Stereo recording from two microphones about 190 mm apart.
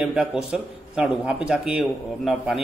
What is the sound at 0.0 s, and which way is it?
A man's voice, 5° right (ahead or behind).